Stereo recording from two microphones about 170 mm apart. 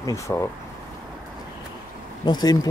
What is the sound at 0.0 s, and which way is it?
Speech, 20° left (ahead or behind).